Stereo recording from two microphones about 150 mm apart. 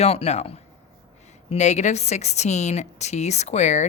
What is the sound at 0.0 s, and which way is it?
Speech, 45° left (ahead or behind).